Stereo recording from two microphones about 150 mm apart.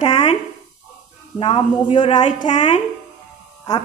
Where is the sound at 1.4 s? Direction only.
35° left (ahead or behind).